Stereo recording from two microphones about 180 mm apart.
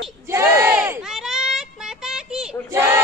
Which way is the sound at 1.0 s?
Centre (ahead or behind).